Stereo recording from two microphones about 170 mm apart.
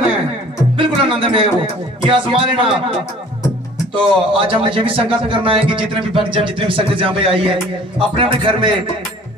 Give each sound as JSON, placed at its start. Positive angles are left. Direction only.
{"t": 0.7, "sound": "music", "side_deg": -30}
{"t": 2.0, "sound": "speech", "side_deg": -30}
{"t": 3.9, "sound": "speech", "side_deg": -30}